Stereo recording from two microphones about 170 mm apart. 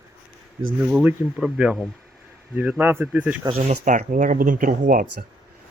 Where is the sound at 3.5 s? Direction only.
35° right (ahead or behind); by 5.2 s 55° right (ahead or behind).